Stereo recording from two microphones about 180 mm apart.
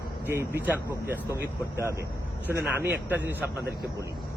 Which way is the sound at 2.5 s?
65° right (ahead or behind).